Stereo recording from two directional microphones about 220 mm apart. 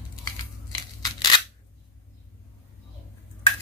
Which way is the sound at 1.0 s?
20° left (ahead or behind).